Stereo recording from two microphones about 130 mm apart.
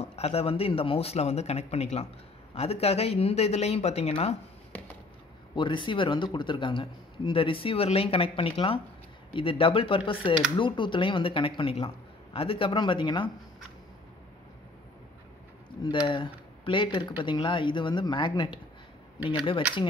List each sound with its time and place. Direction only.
0.0 s speech: 55° left (ahead or behind)
5.6 s a man's voice: 40° left (ahead or behind)
15.8 s a man's voice: 40° left (ahead or behind)